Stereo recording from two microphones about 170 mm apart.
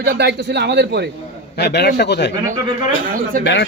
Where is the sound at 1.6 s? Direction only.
75° left (ahead or behind).